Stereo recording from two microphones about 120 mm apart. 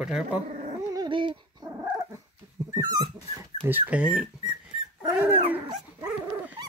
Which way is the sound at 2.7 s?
30° right (ahead or behind).